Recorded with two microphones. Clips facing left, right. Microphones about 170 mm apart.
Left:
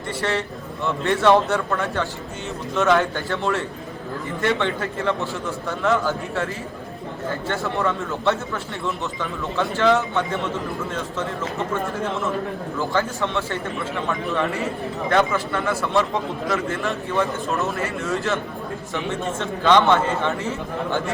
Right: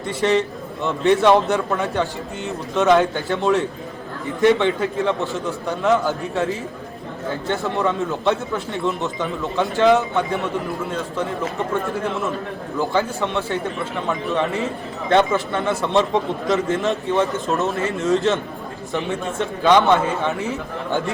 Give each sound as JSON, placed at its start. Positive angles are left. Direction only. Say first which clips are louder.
{"t": 0.2, "sound": "speech", "louder": "right 7 dB", "side_deg": -15}
{"t": 12.8, "sound": "speech", "louder": "right 2 dB", "side_deg": -15}
{"t": 15.1, "sound": "a man's voice", "louder": "right 4 dB", "side_deg": -25}